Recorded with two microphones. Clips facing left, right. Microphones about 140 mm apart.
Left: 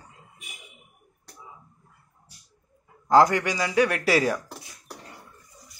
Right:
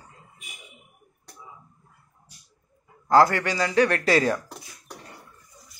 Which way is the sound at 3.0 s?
20° left (ahead or behind).